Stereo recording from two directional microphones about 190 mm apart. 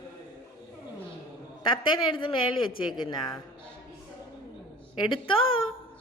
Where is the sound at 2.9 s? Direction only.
20° left (ahead or behind).